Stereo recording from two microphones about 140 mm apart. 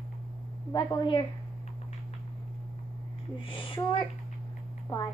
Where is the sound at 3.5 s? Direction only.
35° left (ahead or behind).